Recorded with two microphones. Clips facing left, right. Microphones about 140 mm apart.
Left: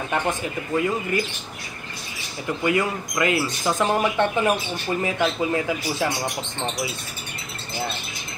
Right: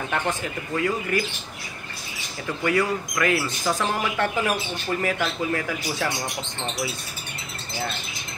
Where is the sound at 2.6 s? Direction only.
20° left (ahead or behind).